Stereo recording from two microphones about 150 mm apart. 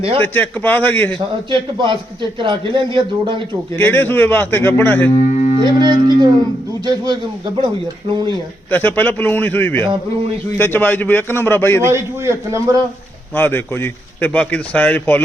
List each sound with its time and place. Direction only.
0.2 s a man's voice: 10° left (ahead or behind)
1.5 s speech: 35° right (ahead or behind)
3.8 s a man's voice: 15° left (ahead or behind)
5.5 s a man's voice: 30° right (ahead or behind)
8.7 s a man's voice: 10° left (ahead or behind)
11.8 s a man's voice: 20° right (ahead or behind)
13.3 s a man's voice: 15° left (ahead or behind)